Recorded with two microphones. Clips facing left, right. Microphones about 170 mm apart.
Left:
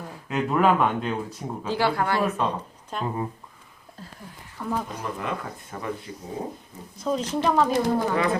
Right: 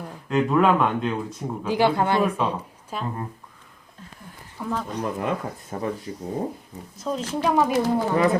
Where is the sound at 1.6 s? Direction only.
15° right (ahead or behind).